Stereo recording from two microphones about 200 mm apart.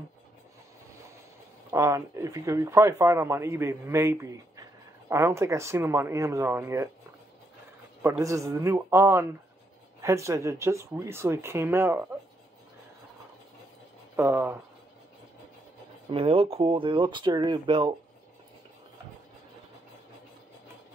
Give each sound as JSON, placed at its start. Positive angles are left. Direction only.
{"t": 1.7, "sound": "speech", "side_deg": -15}
{"t": 8.0, "sound": "speech", "side_deg": -15}
{"t": 14.1, "sound": "speech", "side_deg": -10}
{"t": 16.1, "sound": "speech", "side_deg": -25}